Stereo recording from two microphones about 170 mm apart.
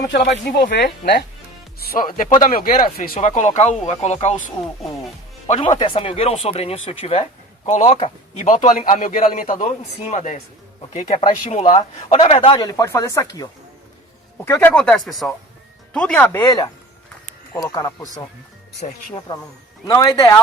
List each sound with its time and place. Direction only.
0.1 s speech: 75° left (ahead or behind)
1.8 s speech: 60° left (ahead or behind); by 4.4 s 40° left (ahead or behind)
5.5 s speech: 45° left (ahead or behind)
5.8 s speech: 30° left (ahead or behind)
8.7 s speech: 50° left (ahead or behind)
11.8 s speech: 30° left (ahead or behind)
12.6 s speech: 20° left (ahead or behind)
17.5 s speech: 20° left (ahead or behind)
19.3 s speech: 25° left (ahead or behind)